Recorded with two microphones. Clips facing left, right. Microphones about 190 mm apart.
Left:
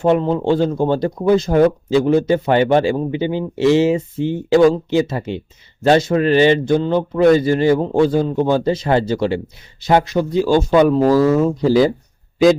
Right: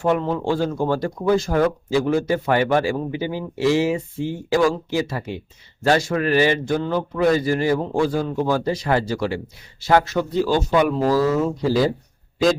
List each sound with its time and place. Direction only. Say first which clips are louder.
0.0 s speech: left 5 dB; 25° left (ahead or behind)